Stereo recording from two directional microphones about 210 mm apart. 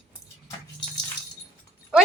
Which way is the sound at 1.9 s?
5° right (ahead or behind).